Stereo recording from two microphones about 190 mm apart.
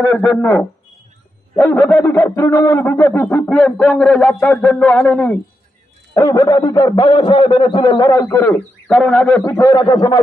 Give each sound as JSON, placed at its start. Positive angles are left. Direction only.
{"t": 0.1, "sound": "a man's voice", "side_deg": 5}
{"t": 9.4, "sound": "a man's voice", "side_deg": 15}